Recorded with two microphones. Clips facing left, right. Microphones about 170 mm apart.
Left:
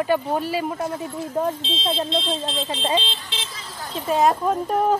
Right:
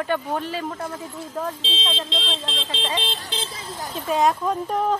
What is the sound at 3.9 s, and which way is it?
Speech, centre (ahead or behind).